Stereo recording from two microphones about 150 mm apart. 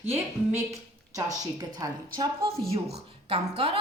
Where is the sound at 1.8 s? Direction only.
30° right (ahead or behind).